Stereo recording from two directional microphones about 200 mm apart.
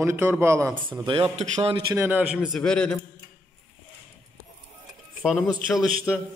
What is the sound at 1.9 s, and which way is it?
A man's voice, 10° right (ahead or behind).